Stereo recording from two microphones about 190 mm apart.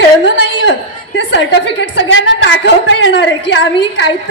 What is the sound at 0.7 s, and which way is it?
A woman's voice, 70° left (ahead or behind).